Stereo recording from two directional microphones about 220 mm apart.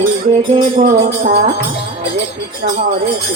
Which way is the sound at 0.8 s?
40° right (ahead or behind).